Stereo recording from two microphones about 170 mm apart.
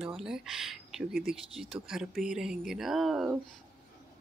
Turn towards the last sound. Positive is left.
turn(degrees=-5)  # may be behind; listen again after turning